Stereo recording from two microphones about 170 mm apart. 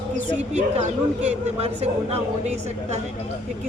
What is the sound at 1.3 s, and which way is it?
Speech, 40° right (ahead or behind).